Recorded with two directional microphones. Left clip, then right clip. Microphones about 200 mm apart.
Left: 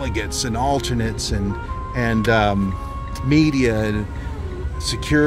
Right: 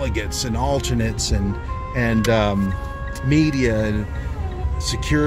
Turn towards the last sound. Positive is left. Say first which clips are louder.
# left 2 dB
turn(degrees=15)  # may be behind; listen again after turning